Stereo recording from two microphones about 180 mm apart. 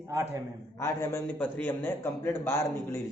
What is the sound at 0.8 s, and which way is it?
A man's voice, 15° left (ahead or behind).